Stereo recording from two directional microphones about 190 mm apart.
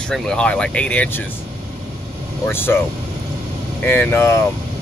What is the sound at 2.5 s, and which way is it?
Speech, 10° left (ahead or behind).